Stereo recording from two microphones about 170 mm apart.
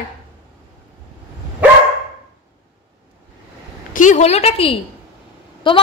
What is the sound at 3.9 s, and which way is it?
Speech, 45° left (ahead or behind).